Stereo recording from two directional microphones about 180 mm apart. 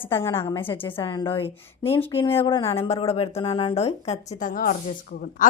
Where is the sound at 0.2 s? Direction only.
15° left (ahead or behind).